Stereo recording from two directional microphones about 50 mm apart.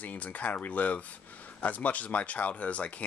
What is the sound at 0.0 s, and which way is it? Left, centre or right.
Speech, left.